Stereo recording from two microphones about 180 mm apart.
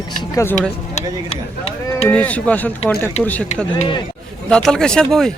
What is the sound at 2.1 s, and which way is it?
Speech, 10° left (ahead or behind).